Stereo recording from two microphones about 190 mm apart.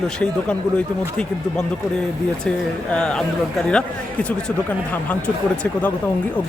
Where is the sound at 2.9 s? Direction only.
5° left (ahead or behind).